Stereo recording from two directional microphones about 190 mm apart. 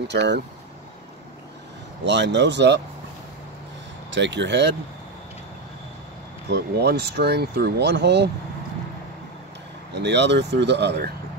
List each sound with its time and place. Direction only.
0.1 s speech: 65° right (ahead or behind)
2.0 s speech: 65° right (ahead or behind)
4.1 s speech: 70° right (ahead or behind)
6.5 s speech: 60° right (ahead or behind)
9.9 s speech: 65° right (ahead or behind)